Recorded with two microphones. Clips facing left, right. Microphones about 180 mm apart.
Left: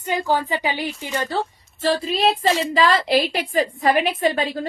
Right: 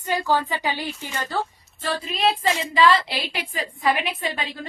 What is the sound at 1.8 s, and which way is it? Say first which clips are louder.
A woman's voice: left 4 dB; 30° left (ahead or behind).